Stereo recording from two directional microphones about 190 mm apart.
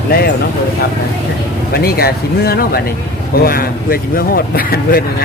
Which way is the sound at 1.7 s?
55° left (ahead or behind).